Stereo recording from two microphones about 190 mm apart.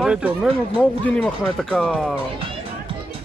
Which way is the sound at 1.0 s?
5° left (ahead or behind).